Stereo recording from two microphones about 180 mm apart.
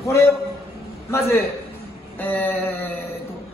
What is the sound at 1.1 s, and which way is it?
A woman's voice, 15° left (ahead or behind).